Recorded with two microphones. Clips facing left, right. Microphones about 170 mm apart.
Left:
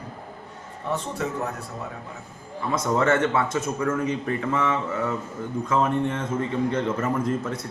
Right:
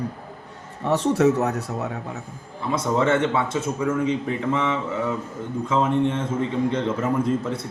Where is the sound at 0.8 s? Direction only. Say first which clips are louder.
Right 10 dB; 80° right.